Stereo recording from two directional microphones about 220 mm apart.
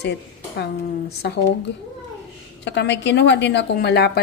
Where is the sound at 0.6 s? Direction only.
50° left (ahead or behind).